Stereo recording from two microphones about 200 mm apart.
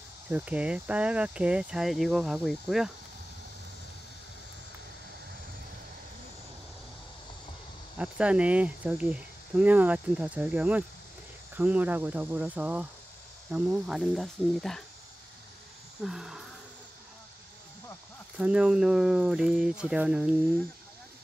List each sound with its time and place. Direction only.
0.3 s speech: 5° right (ahead or behind)
8.0 s speech: 5° right (ahead or behind)
16.0 s speech: centre (ahead or behind)
18.4 s speech: 5° right (ahead or behind)